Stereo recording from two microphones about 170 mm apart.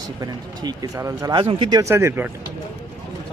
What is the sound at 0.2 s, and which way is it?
Speech, 25° right (ahead or behind).